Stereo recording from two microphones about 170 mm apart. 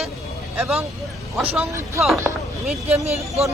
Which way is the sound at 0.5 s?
5° right (ahead or behind).